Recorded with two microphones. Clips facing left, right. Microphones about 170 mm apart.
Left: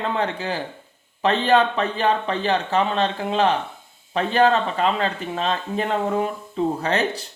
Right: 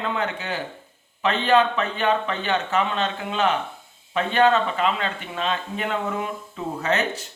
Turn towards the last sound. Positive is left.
turn(degrees=35)  # may be behind; listen again after turning